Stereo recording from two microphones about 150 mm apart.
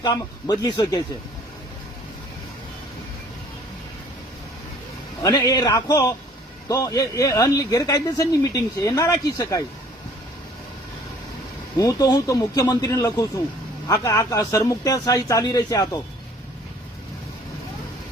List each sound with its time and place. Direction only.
0.0 s speech: 25° left (ahead or behind)
5.2 s speech: 25° left (ahead or behind)
11.8 s speech: 25° left (ahead or behind)